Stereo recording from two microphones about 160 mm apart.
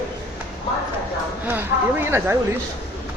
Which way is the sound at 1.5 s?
15° right (ahead or behind).